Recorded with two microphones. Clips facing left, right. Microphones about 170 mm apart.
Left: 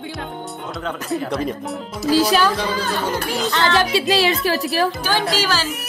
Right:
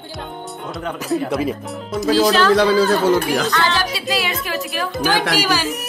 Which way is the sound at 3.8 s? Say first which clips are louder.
Left 5 dB; 25° left (ahead or behind).